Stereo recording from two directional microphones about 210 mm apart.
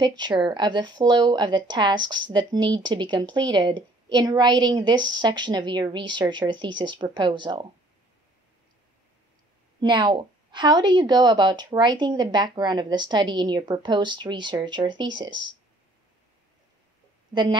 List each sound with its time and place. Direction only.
0.0 s a woman's voice: 20° right (ahead or behind)
9.8 s a woman's voice: 20° right (ahead or behind)
17.3 s speech: 20° right (ahead or behind)